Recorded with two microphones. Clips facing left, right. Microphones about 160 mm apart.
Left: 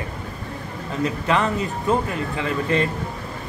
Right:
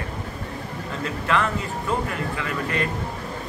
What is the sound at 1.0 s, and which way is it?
Speech, 20° left (ahead or behind).